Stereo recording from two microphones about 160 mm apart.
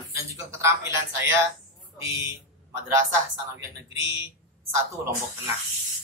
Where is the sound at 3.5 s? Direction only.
15° right (ahead or behind).